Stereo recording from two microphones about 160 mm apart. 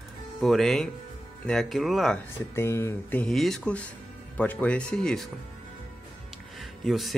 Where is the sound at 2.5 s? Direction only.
15° left (ahead or behind).